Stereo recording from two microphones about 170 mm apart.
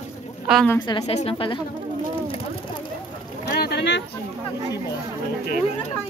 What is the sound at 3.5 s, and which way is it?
Boat, 70° left (ahead or behind).